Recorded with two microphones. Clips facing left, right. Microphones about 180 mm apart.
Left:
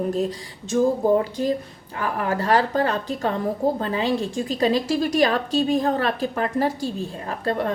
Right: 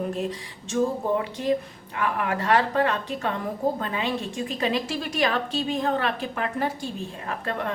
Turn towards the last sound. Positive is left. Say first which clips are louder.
# left 5 dB
turn(degrees=35)  # may be behind; listen again after turning